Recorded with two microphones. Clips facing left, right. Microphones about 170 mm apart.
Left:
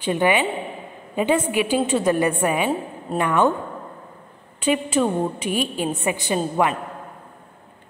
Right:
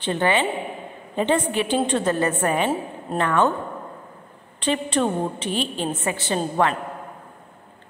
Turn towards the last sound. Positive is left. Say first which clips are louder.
# left 1 dB
turn(degrees=10)  # may be behind; listen again after turning